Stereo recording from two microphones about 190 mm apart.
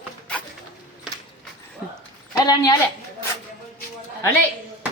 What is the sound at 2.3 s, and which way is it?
Speech, 20° left (ahead or behind).